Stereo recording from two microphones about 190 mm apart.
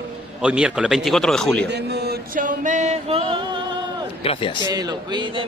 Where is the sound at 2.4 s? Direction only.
45° right (ahead or behind).